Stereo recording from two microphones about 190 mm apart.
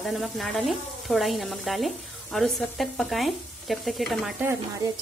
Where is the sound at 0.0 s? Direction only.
Centre (ahead or behind).